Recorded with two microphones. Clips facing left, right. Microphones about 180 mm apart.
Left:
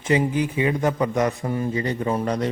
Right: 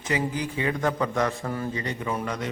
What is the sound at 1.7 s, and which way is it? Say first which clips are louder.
Speech: left 6 dB; 35° left (ahead or behind).